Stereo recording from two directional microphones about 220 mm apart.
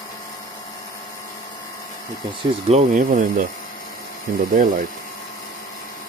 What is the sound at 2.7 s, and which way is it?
Speech, 35° right (ahead or behind).